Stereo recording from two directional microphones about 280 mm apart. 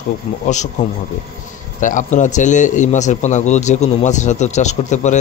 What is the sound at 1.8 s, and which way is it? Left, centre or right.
A man's voice, left.